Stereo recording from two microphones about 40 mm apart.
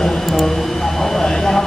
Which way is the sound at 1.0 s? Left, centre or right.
Centre.